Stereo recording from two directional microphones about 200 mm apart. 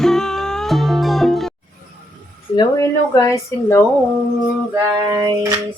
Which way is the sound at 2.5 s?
15° left (ahead or behind).